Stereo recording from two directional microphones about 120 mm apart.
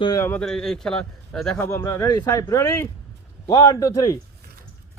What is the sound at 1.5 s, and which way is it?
A man's voice, 25° left (ahead or behind).